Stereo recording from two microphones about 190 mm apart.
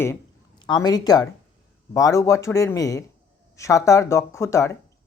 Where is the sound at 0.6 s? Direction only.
20° left (ahead or behind).